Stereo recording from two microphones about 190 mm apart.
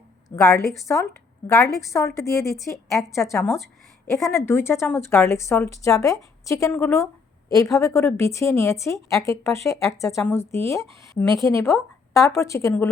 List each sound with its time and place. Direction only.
0.3 s a woman's voice: 15° left (ahead or behind)